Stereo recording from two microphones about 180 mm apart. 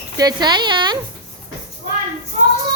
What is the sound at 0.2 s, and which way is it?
Speech, 20° right (ahead or behind).